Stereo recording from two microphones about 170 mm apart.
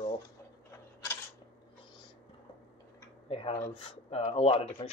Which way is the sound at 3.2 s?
35° left (ahead or behind).